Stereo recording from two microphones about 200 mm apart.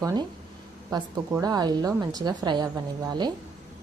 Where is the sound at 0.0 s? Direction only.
20° right (ahead or behind).